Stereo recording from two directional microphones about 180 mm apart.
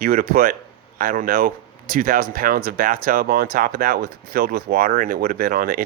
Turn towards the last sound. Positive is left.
turn(degrees=-50)  # may be behind; listen again after turning